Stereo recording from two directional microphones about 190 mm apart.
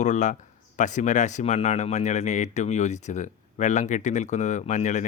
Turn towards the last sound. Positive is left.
turn(degrees=40)  # may be behind; listen again after turning